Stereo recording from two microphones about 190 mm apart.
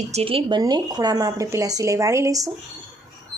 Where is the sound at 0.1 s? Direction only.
30° right (ahead or behind).